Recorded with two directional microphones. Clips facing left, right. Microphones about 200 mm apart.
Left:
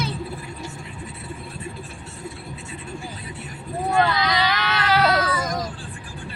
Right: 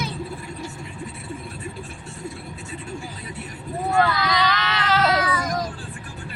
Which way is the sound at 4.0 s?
20° left (ahead or behind).